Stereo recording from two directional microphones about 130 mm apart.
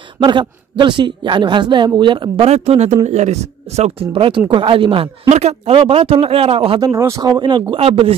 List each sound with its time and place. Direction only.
0.2 s speech: 35° right (ahead or behind)
5.3 s speech: 55° right (ahead or behind)
6.9 s speech: 20° right (ahead or behind)
7.7 s speech: 45° right (ahead or behind)